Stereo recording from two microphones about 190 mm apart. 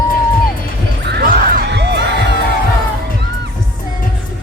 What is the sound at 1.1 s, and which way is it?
Music, 60° right (ahead or behind).